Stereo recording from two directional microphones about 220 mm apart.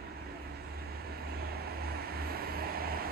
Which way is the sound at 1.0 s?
45° right (ahead or behind).